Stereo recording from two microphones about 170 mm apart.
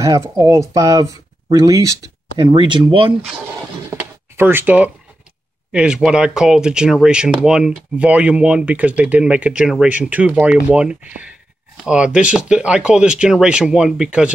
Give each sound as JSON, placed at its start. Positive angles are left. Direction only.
{"t": 0.0, "sound": "speech", "side_deg": -20}
{"t": 3.9, "sound": "a sound", "side_deg": -10}
{"t": 5.7, "sound": "speech", "side_deg": -5}